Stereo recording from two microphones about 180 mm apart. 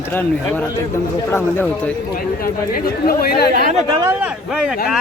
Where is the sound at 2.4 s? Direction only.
55° left (ahead or behind).